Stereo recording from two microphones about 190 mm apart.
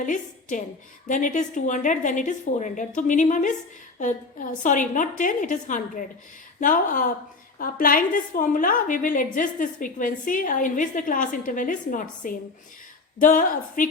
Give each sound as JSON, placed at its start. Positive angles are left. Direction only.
{"t": 0.0, "sound": "a woman's voice", "side_deg": 40}